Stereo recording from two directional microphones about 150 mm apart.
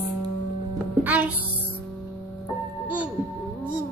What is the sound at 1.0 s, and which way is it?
Music, 10° right (ahead or behind).